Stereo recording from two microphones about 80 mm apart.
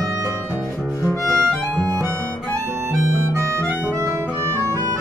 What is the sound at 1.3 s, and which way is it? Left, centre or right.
Music, centre.